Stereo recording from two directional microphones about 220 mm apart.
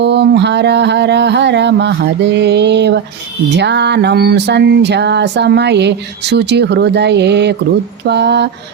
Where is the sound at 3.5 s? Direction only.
50° right (ahead or behind).